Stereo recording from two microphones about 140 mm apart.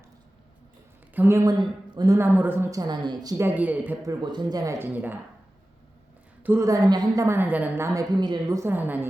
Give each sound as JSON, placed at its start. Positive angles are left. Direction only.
{"t": 1.1, "sound": "speech", "side_deg": -15}
{"t": 1.5, "sound": "a man's voice", "side_deg": -30}
{"t": 2.1, "sound": "a woman's voice", "side_deg": -15}
{"t": 3.4, "sound": "speech", "side_deg": -10}
{"t": 4.0, "sound": "a woman's voice", "side_deg": -30}
{"t": 4.9, "sound": "speech", "side_deg": -10}
{"t": 6.4, "sound": "a woman's voice", "side_deg": -20}